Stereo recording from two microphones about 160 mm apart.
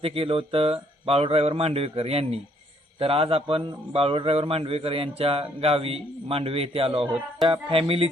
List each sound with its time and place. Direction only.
0.0 s a man's voice: 35° right (ahead or behind)